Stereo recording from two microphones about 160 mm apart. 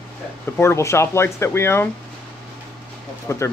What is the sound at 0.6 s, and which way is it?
Speech, 15° left (ahead or behind).